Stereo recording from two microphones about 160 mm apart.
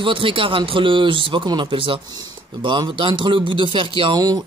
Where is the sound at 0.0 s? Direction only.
35° right (ahead or behind).